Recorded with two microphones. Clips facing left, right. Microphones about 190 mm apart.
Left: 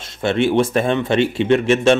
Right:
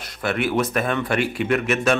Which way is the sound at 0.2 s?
25° left (ahead or behind).